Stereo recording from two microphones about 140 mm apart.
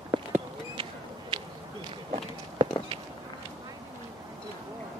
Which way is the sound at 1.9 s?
40° right (ahead or behind).